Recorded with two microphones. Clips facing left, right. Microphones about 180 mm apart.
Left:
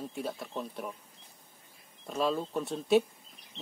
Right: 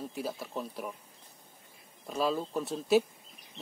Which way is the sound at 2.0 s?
Centre (ahead or behind).